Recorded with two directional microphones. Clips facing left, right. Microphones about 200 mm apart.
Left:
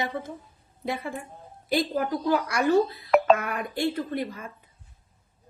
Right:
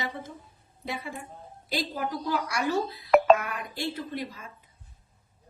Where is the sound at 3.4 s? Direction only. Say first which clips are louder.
Left 6 dB; 55° left (ahead or behind).